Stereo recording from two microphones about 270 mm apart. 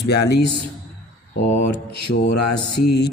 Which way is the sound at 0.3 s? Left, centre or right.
Left.